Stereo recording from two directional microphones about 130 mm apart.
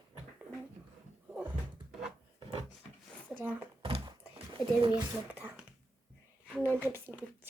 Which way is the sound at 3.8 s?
40° right (ahead or behind).